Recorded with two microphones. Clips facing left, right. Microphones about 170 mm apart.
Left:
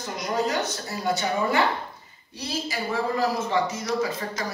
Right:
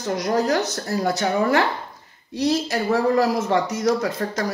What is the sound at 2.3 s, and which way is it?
A man's voice, 90° right.